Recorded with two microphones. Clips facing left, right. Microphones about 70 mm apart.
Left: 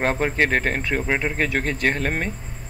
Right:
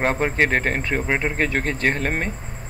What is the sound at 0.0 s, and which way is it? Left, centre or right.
Speech, centre.